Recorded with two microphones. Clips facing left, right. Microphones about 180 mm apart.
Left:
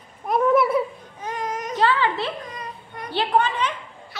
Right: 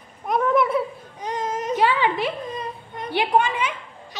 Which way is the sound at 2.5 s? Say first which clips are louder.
Right 4 dB; 25° right (ahead or behind).